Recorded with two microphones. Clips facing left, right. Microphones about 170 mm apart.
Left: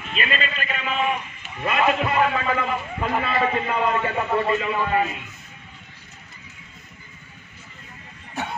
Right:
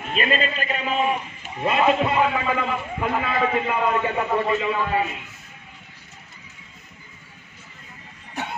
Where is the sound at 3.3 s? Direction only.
Centre (ahead or behind).